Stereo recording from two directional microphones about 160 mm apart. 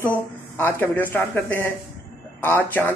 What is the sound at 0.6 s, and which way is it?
Speech, 10° left (ahead or behind).